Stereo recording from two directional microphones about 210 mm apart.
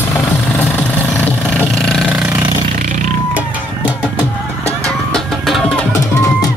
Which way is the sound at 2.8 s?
35° right (ahead or behind).